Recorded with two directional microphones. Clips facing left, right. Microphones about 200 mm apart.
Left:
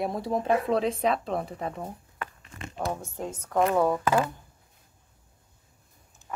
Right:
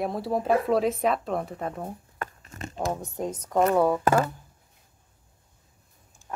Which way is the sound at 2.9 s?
20° right (ahead or behind).